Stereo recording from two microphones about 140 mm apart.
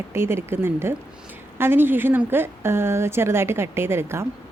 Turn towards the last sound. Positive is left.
turn(degrees=-20)  # may be behind; listen again after turning